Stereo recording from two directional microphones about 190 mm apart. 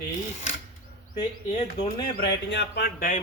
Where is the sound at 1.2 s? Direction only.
30° left (ahead or behind).